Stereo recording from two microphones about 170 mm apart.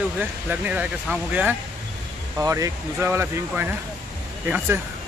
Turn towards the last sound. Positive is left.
turn(degrees=-10)  # may be behind; listen again after turning